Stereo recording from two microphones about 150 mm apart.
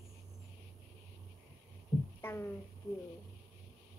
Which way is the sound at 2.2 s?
15° left (ahead or behind).